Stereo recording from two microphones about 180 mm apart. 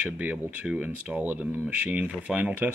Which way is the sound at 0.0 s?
10° right (ahead or behind).